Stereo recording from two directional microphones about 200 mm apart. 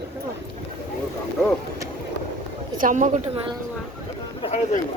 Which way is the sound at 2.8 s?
40° right (ahead or behind).